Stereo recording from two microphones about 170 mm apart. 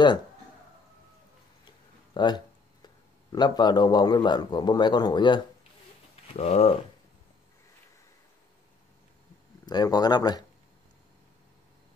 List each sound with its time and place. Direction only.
2.1 s a man's voice: 25° left (ahead or behind)
6.2 s speech: 40° left (ahead or behind)
9.7 s speech: 25° left (ahead or behind)